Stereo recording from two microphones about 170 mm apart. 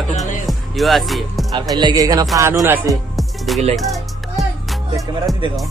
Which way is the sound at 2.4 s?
15° right (ahead or behind).